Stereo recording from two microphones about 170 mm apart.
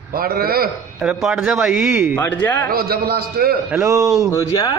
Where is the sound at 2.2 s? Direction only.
10° left (ahead or behind).